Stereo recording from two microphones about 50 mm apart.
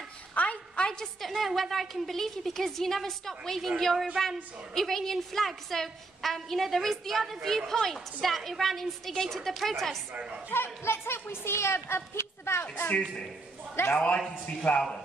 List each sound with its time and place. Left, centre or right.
0.3 s a sound: left
1.2 s a woman's voice: centre
10.5 s speech: left
13.9 s a man's voice: centre